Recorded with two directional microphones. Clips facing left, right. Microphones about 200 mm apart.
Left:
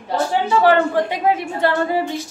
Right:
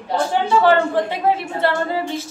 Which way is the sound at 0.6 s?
15° left (ahead or behind).